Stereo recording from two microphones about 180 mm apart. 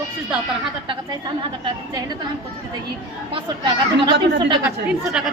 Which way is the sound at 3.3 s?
25° right (ahead or behind).